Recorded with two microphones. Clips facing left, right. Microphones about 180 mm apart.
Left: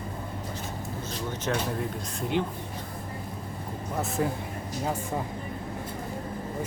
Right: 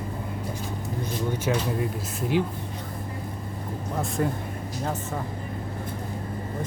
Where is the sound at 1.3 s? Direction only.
10° right (ahead or behind).